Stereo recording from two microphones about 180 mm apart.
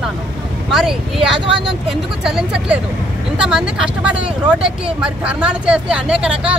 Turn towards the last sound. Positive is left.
turn(degrees=-5)  # may be behind; listen again after turning